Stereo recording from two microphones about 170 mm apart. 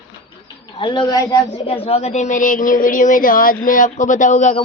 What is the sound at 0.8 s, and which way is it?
A woman's voice, 30° left (ahead or behind).